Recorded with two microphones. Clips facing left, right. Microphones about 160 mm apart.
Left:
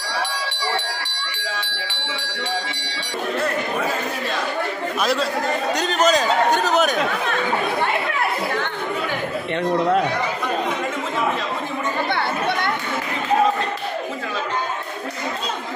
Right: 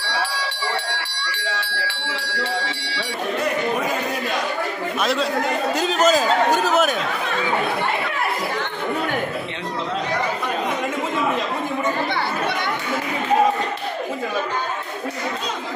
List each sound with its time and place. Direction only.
5.0 s speech: centre (ahead or behind)
12.1 s chatter: 55° left (ahead or behind)